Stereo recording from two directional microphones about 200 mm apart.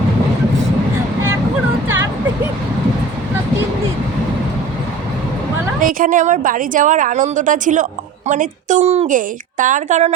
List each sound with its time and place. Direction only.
5.8 s a woman's voice: 40° right (ahead or behind)